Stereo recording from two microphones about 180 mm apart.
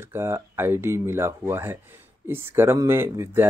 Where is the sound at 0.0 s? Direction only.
15° right (ahead or behind).